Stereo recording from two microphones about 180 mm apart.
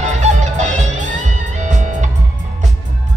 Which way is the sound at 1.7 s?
40° right (ahead or behind).